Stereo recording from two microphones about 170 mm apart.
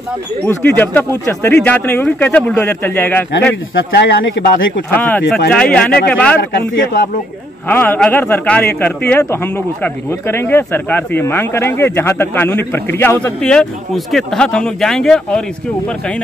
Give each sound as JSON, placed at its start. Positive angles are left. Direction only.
{"t": 0.5, "sound": "speech", "side_deg": 10}
{"t": 3.9, "sound": "a man's voice", "side_deg": 90}
{"t": 4.9, "sound": "speech", "side_deg": 10}
{"t": 6.3, "sound": "a man's voice", "side_deg": 90}
{"t": 7.6, "sound": "speech", "side_deg": 10}